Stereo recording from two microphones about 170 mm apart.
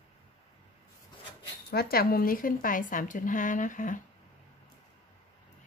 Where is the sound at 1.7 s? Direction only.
65° left (ahead or behind).